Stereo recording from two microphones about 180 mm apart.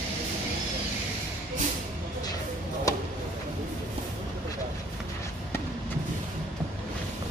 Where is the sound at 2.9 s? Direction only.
20° left (ahead or behind).